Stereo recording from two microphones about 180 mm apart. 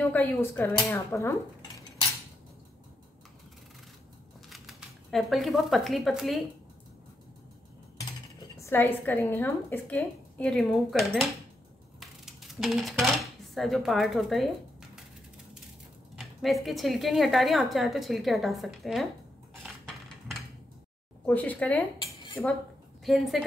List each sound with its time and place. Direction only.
0.0 s speech: 10° left (ahead or behind)
4.5 s speech: centre (ahead or behind)
8.0 s speech: 20° left (ahead or behind); by 14.9 s centre (ahead or behind)
16.2 s a woman's voice: centre (ahead or behind)
21.3 s speech: 10° left (ahead or behind)
21.9 s dishes: 25° left (ahead or behind)
23.0 s a woman's voice: centre (ahead or behind)